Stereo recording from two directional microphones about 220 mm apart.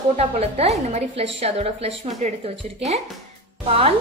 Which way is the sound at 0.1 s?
30° right (ahead or behind).